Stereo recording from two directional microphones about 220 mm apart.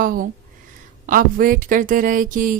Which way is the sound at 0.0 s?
40° right (ahead or behind).